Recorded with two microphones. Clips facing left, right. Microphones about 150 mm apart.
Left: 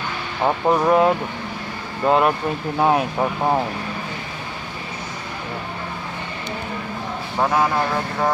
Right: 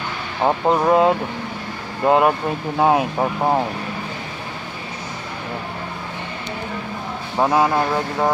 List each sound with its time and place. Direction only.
0.4 s speech: 15° right (ahead or behind)
7.3 s speech: 15° right (ahead or behind)